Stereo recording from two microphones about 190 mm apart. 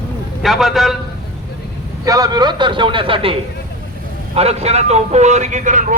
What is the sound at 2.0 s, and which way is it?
A man's voice, 20° right (ahead or behind).